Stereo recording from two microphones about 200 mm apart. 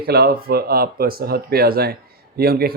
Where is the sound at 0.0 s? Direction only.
50° right (ahead or behind).